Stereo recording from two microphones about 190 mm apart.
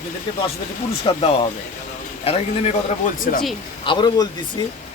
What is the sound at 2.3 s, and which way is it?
Speech, 30° left (ahead or behind).